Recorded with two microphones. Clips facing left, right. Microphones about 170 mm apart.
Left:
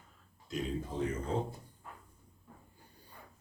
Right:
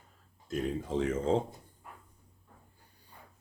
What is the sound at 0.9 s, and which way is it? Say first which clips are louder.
Speech: right 8 dB; 90° right.